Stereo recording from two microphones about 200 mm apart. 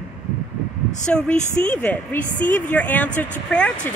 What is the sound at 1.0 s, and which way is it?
Speech, 5° left (ahead or behind).